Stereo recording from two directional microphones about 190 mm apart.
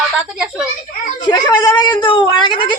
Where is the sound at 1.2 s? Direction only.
20° left (ahead or behind).